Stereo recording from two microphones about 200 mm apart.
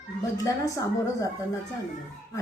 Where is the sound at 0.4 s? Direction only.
15° left (ahead or behind).